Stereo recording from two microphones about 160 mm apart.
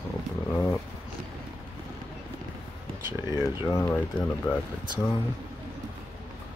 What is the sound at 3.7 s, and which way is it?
Speech, 15° left (ahead or behind).